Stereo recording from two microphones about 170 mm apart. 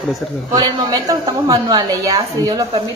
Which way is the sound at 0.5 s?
25° right (ahead or behind).